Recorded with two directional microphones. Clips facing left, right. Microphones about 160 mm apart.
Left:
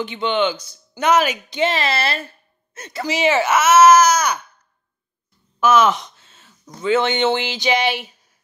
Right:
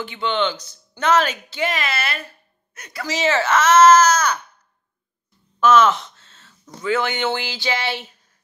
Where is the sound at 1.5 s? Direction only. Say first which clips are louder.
Left 4 dB; 30° left (ahead or behind).